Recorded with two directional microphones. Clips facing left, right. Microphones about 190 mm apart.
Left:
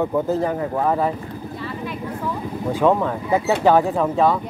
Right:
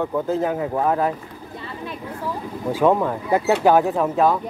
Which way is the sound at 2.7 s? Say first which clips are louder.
Even; 10° right (ahead or behind).